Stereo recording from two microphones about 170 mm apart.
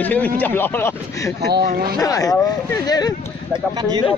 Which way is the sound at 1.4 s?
70° right (ahead or behind).